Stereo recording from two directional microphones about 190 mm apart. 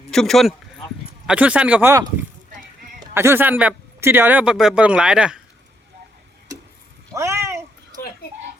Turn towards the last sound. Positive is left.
turn(degrees=-15)  # may be behind; listen again after turning